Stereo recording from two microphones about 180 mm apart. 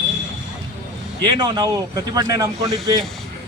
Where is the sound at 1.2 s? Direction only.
25° right (ahead or behind).